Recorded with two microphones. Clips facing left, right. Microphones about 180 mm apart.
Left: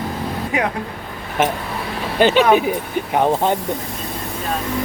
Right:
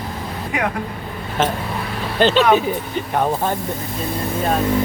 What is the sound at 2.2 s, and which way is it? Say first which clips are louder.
Speech: left 1 dB; 15° left (ahead or behind).